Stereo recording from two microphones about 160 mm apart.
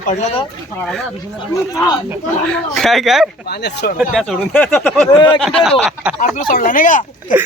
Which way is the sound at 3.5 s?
90° left.